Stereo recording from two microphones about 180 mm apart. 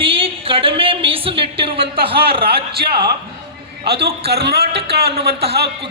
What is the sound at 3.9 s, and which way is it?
A man's voice, 65° right (ahead or behind).